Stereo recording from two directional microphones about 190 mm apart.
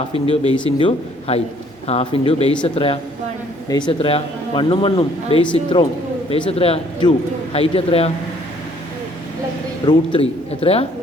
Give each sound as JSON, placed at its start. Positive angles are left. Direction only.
{"t": 0.1, "sound": "a man's voice", "side_deg": 30}
{"t": 9.8, "sound": "a man's voice", "side_deg": 30}